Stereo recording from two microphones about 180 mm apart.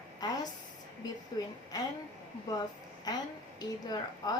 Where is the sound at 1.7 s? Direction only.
20° left (ahead or behind).